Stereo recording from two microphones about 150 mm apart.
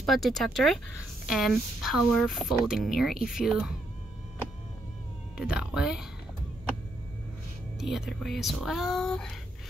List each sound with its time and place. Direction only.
0.0 s a woman's voice: centre (ahead or behind)
5.4 s a woman's voice: 5° right (ahead or behind)
7.8 s a woman's voice: 5° right (ahead or behind)